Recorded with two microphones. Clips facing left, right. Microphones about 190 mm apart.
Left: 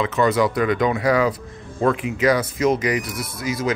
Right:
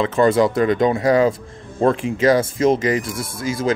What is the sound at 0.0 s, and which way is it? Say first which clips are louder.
Speech: right 3 dB; 30° right (ahead or behind).